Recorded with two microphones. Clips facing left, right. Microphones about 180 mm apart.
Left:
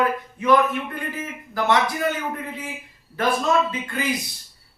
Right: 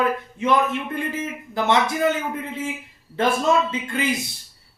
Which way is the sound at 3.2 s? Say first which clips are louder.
Right 1 dB; 25° right (ahead or behind).